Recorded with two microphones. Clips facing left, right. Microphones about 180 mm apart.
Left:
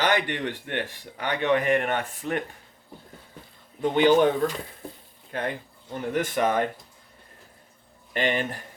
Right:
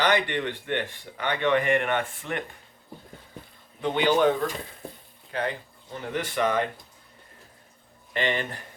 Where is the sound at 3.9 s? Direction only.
45° left (ahead or behind).